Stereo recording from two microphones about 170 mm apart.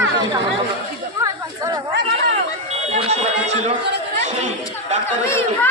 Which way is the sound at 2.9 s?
40° right (ahead or behind).